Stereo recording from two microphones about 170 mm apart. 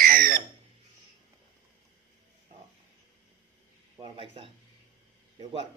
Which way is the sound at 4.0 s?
35° right (ahead or behind).